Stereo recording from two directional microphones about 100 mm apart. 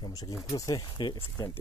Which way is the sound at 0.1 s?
35° left (ahead or behind).